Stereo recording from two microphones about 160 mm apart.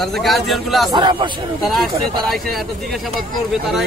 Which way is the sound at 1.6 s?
Centre (ahead or behind).